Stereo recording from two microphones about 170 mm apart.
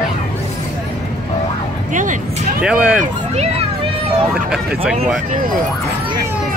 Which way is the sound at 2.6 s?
5° right (ahead or behind).